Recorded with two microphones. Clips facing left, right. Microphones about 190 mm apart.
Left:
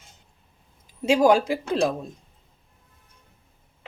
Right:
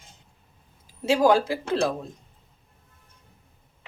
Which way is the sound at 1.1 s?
15° left (ahead or behind).